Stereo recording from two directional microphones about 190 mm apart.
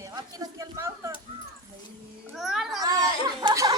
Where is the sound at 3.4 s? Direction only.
15° right (ahead or behind).